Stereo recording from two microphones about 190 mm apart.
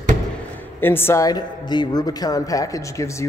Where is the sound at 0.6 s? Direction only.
10° left (ahead or behind).